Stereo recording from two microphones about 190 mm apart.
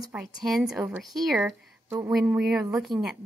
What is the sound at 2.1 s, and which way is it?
A woman's voice, 5° right (ahead or behind).